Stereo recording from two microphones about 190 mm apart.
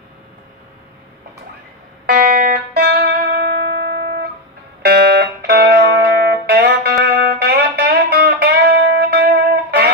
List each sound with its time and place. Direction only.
2.0 s music: 55° right (ahead or behind)
4.8 s music: 55° right (ahead or behind)